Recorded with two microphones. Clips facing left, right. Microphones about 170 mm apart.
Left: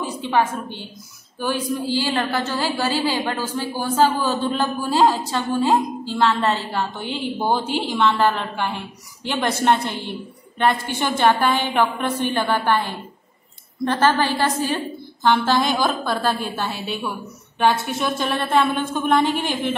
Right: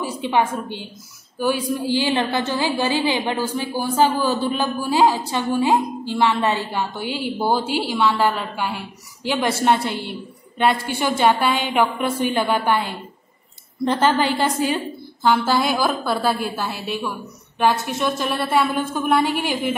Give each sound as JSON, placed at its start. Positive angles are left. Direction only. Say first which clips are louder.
{"t": 0.0, "sound": "a woman's voice", "louder": "even", "side_deg": -15}